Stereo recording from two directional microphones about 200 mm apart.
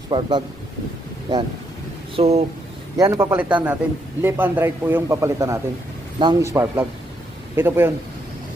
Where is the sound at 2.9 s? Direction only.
15° right (ahead or behind).